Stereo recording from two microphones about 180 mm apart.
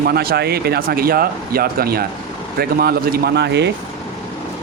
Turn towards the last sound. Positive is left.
turn(degrees=-70)  # may be behind; listen again after turning